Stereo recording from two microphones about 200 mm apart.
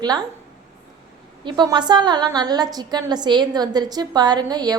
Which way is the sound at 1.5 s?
20° right (ahead or behind).